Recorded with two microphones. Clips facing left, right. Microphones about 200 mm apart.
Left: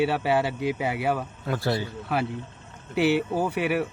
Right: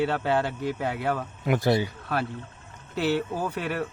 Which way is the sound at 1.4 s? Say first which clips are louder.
Right 5 dB; 15° right (ahead or behind).